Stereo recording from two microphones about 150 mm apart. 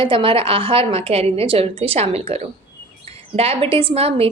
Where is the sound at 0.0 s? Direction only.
35° right (ahead or behind).